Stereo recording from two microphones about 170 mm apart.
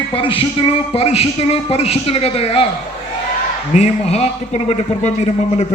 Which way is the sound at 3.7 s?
40° left (ahead or behind).